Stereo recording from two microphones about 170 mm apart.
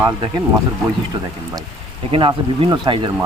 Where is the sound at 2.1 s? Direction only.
30° right (ahead or behind).